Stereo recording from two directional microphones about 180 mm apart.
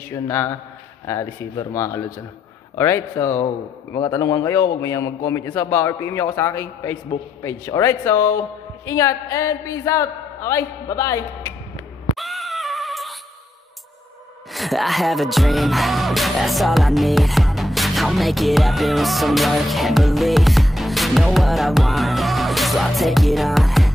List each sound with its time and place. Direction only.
0.1 s a man's voice: 15° left (ahead or behind)
12.2 s a sound: centre (ahead or behind)
14.5 s music: centre (ahead or behind)